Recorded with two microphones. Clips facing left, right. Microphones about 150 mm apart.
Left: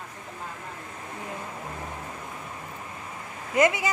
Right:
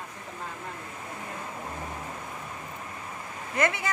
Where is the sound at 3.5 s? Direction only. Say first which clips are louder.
Left 5 dB; 15° left (ahead or behind).